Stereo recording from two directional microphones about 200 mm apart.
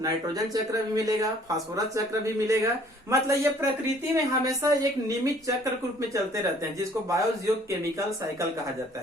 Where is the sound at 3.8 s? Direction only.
15° right (ahead or behind).